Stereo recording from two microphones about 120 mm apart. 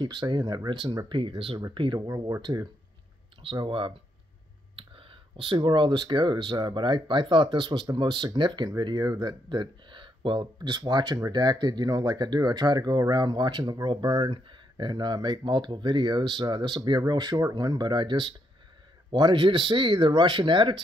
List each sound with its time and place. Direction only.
0.0 s speech: 40° right (ahead or behind)
3.5 s speech: 45° right (ahead or behind)